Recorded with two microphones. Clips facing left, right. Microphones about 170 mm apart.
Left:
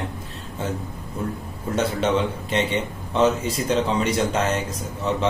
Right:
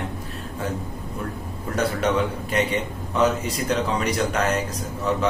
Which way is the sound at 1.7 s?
25° left (ahead or behind).